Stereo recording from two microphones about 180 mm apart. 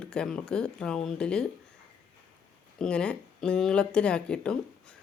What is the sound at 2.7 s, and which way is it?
A woman's voice, 5° left (ahead or behind).